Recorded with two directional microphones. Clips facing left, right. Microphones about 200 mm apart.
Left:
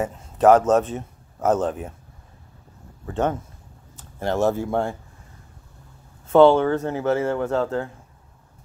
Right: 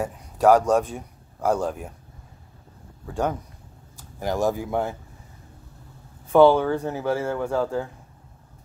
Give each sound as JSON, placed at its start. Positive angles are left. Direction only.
{"t": 0.0, "sound": "a man's voice", "side_deg": -10}
{"t": 1.7, "sound": "speech", "side_deg": 0}
{"t": 3.1, "sound": "speech", "side_deg": -5}
{"t": 4.6, "sound": "speech", "side_deg": -5}
{"t": 6.3, "sound": "speech", "side_deg": -10}